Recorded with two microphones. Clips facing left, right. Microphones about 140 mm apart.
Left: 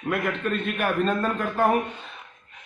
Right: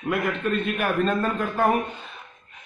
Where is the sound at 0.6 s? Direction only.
Centre (ahead or behind).